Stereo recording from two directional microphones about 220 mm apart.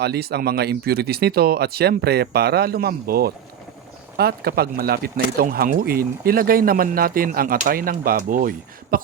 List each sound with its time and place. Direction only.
0.0 s speech: 45° right (ahead or behind)